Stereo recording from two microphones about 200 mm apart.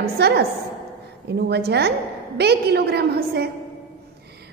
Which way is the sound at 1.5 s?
55° right (ahead or behind).